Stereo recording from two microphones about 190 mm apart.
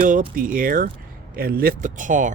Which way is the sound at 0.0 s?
50° right (ahead or behind).